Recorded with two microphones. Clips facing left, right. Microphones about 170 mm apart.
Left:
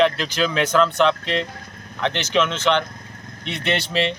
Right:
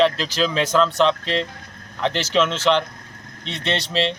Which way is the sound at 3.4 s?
25° right (ahead or behind).